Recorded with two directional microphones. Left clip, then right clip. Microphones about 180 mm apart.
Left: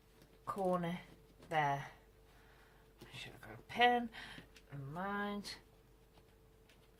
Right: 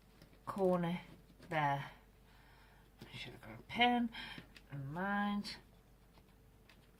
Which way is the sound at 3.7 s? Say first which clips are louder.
Left 1 dB; 20° left (ahead or behind).